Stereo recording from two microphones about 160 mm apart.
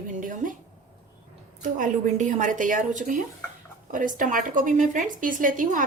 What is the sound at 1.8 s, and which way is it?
A woman's voice, 50° right (ahead or behind).